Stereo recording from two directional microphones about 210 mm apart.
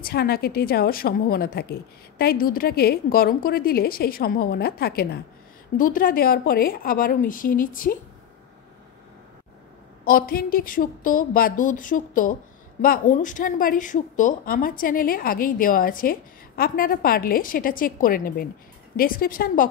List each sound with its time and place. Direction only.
0.0 s a woman's voice: 45° left (ahead or behind)
10.0 s a woman's voice: 45° left (ahead or behind)